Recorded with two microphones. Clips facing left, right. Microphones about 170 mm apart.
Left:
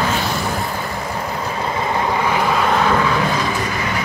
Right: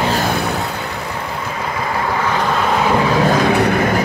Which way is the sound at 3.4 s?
65° right (ahead or behind).